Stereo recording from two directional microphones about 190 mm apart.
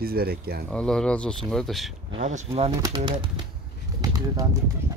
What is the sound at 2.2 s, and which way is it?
Speech, 35° right (ahead or behind).